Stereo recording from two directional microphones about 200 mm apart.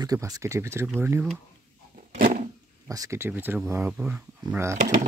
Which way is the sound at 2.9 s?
15° right (ahead or behind).